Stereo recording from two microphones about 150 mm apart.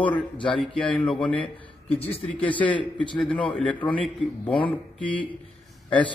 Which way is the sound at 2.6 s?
10° left (ahead or behind).